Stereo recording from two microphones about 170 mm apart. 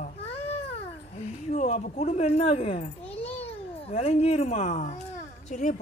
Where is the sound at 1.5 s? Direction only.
45° left (ahead or behind).